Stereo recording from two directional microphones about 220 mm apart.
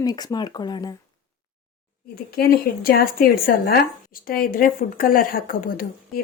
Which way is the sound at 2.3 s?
45° left (ahead or behind).